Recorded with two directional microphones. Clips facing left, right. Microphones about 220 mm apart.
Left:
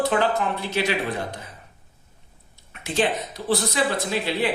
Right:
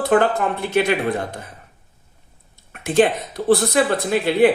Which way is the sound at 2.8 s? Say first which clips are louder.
Right 7 dB; 55° right (ahead or behind).